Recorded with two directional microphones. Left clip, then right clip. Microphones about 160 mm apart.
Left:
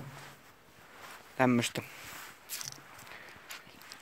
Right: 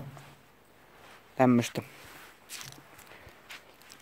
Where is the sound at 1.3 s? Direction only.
25° right (ahead or behind).